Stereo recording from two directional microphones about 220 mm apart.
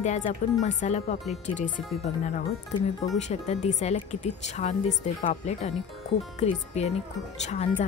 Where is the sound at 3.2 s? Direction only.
30° left (ahead or behind).